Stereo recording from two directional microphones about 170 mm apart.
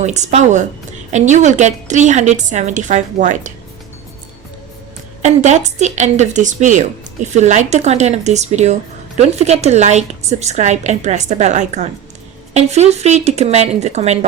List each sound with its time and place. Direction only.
0.0 s a woman's voice: 45° right (ahead or behind)
5.2 s a woman's voice: 45° right (ahead or behind)